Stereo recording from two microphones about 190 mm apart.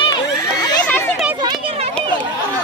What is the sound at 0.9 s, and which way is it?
Chatter, 10° left (ahead or behind).